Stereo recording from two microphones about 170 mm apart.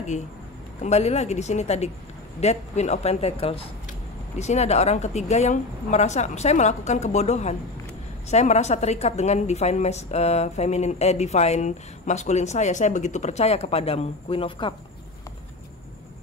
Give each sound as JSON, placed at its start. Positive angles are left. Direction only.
{"t": 0.8, "sound": "a woman's voice", "side_deg": 40}